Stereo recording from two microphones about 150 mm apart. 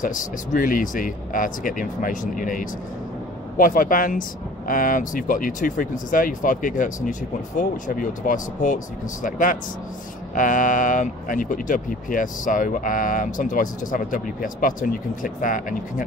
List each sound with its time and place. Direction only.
0.0 s speech: 60° left (ahead or behind)